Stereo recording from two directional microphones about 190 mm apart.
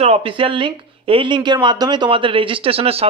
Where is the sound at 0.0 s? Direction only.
30° right (ahead or behind).